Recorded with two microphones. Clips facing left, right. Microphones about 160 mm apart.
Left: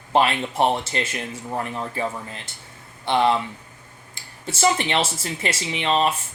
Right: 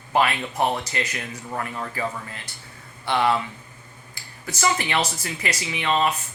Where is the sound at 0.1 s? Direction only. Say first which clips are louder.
Left 2 dB; 25° left (ahead or behind).